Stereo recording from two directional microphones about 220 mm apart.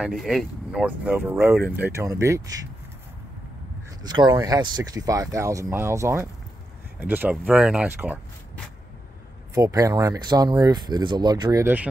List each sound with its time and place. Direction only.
0.0 s speech: centre (ahead or behind)
4.0 s speech: 20° right (ahead or behind)